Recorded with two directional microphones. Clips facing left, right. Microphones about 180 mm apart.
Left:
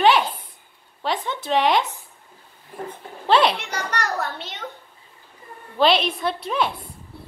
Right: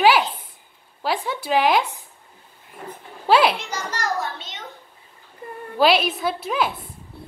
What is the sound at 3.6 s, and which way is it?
A child's voice, 65° left (ahead or behind).